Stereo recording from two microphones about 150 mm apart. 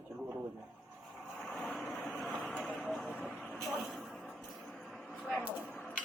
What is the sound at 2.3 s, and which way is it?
Vehicle, centre (ahead or behind).